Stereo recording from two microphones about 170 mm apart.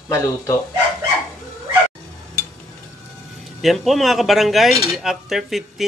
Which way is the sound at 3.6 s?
Centre (ahead or behind).